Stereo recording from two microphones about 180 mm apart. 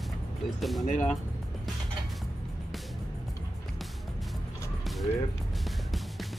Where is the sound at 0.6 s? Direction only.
Centre (ahead or behind).